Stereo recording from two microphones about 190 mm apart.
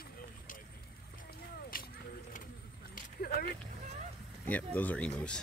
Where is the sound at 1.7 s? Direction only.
50° left (ahead or behind).